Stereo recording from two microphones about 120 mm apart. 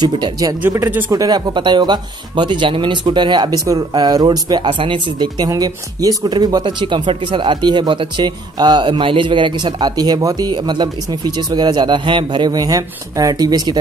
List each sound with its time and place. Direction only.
0.0 s speech: 35° right (ahead or behind)
0.6 s speech: 15° right (ahead or behind)
1.1 s speech: 30° right (ahead or behind)